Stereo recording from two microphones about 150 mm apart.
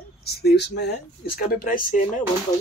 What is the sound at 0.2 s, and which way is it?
Speech, 90° left.